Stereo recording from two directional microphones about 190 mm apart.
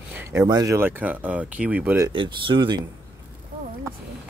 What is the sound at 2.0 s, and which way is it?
Speech, 25° right (ahead or behind).